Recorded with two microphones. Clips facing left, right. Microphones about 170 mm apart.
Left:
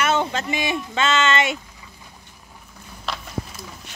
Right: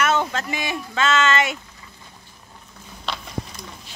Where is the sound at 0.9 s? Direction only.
20° left (ahead or behind).